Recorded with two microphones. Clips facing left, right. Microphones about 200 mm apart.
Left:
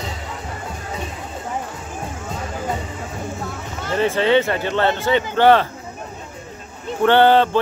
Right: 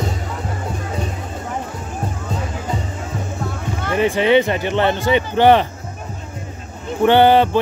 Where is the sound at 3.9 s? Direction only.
15° right (ahead or behind).